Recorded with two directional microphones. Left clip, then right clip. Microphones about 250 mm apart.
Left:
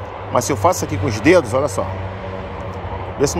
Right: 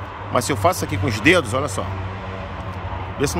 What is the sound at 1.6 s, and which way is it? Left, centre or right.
Speech, centre.